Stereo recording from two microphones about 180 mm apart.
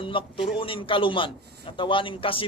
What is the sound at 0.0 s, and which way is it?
A man's voice, 30° left (ahead or behind).